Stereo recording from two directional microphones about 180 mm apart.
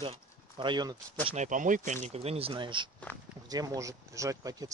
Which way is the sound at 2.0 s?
35° right (ahead or behind).